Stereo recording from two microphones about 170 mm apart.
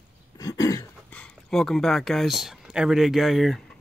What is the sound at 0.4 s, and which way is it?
Throat clearing, 20° left (ahead or behind).